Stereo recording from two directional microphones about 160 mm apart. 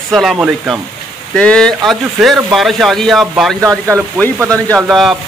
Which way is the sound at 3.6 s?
15° right (ahead or behind).